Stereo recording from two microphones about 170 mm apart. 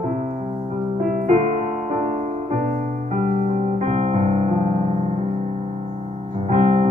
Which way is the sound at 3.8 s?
45° right (ahead or behind).